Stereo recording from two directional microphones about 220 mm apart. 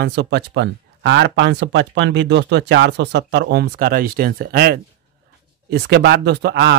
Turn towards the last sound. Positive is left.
turn(degrees=-50)  # may be behind; listen again after turning